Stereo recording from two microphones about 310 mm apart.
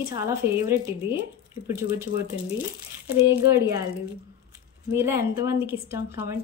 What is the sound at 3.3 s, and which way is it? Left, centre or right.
Speech, centre.